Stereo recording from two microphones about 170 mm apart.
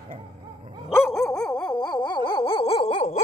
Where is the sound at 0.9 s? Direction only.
15° left (ahead or behind); by 3.2 s 35° left (ahead or behind).